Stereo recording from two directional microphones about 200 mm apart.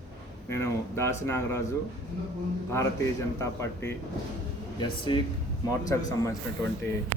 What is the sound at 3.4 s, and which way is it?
A man's voice, 15° left (ahead or behind).